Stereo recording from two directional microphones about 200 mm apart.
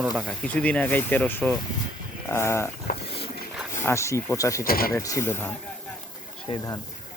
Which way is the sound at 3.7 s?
15° left (ahead or behind).